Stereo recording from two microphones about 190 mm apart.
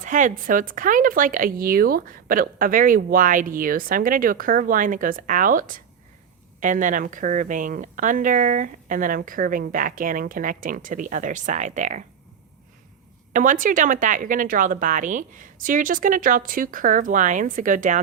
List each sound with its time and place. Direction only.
0.0 s speech: 40° right (ahead or behind)
13.3 s speech: 45° right (ahead or behind)